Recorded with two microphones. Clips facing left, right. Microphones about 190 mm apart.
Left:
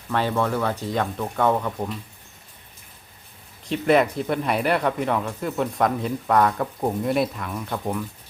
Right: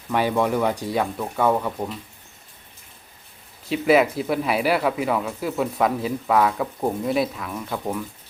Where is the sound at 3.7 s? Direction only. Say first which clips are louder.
Right 1 dB; 5° right (ahead or behind).